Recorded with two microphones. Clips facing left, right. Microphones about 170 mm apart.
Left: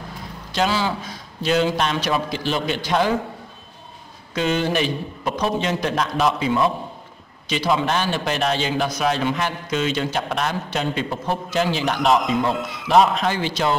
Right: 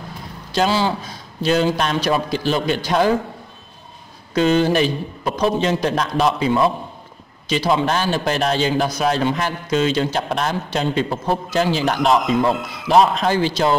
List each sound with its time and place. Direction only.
0.6 s a man's voice: 30° right (ahead or behind)
4.3 s a man's voice: 35° right (ahead or behind)